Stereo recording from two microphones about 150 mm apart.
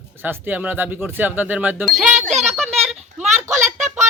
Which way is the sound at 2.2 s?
50° right (ahead or behind).